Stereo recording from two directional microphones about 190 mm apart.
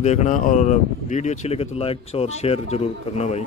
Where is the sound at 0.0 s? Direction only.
35° left (ahead or behind).